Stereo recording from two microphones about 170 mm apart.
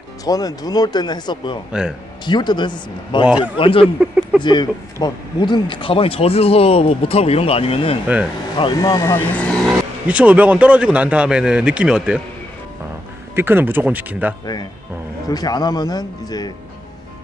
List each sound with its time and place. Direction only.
0.2 s speech: 20° left (ahead or behind)
1.7 s a man's voice: 5° right (ahead or behind)
2.2 s speech: 25° left (ahead or behind)
3.3 s a man's voice: 5° right (ahead or behind)
3.5 s speech: 30° left (ahead or behind)
8.8 s speech: 15° left (ahead or behind)
10.0 s a man's voice: 10° right (ahead or behind)
13.4 s a man's voice: 10° right (ahead or behind)
14.4 s speech: 25° left (ahead or behind)